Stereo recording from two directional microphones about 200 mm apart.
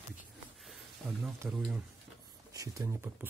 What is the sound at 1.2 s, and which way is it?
Speech, 5° right (ahead or behind).